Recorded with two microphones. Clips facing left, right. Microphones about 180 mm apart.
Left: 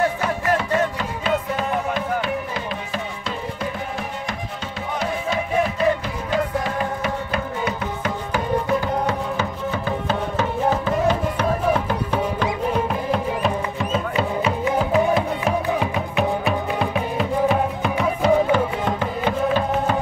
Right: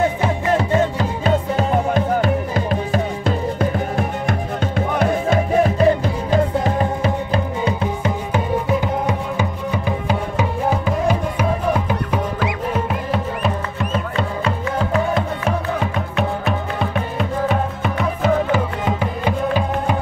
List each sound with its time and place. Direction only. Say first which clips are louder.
0.2 s music: right 3 dB; 30° right (ahead or behind); by 20.0 s 10° right (ahead or behind)